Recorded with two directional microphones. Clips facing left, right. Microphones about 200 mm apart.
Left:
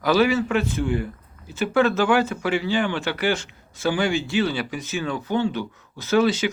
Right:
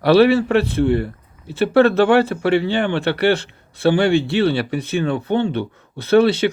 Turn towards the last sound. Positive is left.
turn(degrees=-60)  # may be behind; listen again after turning